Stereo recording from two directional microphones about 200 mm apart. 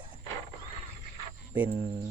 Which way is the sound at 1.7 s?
45° right (ahead or behind).